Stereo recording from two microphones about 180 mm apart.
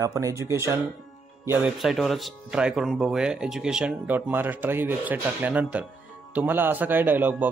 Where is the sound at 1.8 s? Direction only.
Centre (ahead or behind).